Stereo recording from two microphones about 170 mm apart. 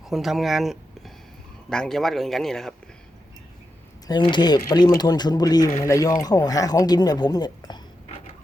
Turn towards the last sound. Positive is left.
turn(degrees=25)  # may be behind; listen again after turning